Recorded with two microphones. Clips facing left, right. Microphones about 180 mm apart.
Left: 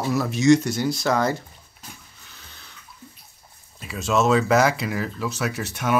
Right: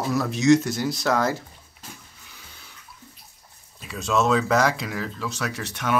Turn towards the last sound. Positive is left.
turn(degrees=5)  # may be behind; listen again after turning